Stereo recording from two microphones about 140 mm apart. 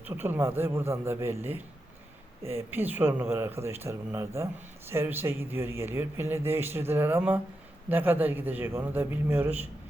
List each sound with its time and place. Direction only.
0.0 s speech: 15° right (ahead or behind)